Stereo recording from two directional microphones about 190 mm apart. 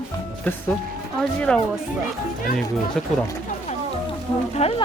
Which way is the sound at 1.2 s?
5° left (ahead or behind).